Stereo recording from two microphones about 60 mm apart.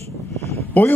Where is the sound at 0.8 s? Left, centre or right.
Left.